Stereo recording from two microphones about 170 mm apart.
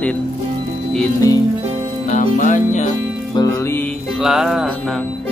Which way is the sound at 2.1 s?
45° left (ahead or behind).